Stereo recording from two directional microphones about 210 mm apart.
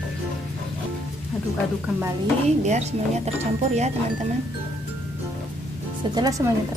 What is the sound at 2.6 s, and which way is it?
Speech, 35° right (ahead or behind).